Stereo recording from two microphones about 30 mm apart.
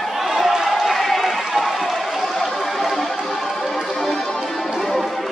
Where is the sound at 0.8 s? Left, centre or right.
Centre.